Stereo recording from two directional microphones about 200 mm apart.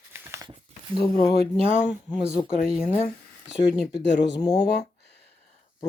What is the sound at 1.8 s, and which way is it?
Speech, 20° left (ahead or behind).